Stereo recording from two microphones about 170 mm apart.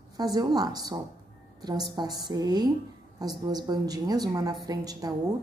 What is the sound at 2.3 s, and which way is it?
A woman's voice, 25° right (ahead or behind).